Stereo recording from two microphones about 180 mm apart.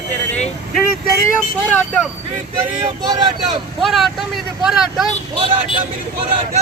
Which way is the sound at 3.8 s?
Centre (ahead or behind).